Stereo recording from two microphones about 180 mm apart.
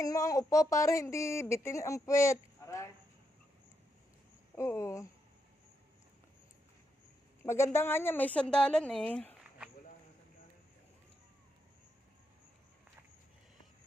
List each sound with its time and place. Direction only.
0.0 s speech: 20° left (ahead or behind)
4.5 s speech: 15° left (ahead or behind)
7.4 s speech: 15° left (ahead or behind)